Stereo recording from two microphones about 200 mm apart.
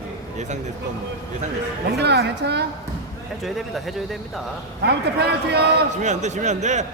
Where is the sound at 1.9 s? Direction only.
55° right (ahead or behind).